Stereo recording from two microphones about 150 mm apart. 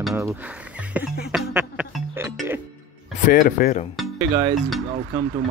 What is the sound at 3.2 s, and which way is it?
Speech, 70° left (ahead or behind).